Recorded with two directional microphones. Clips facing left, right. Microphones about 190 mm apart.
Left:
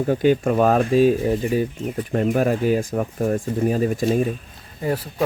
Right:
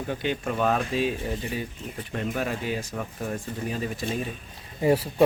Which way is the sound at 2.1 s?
45° left (ahead or behind).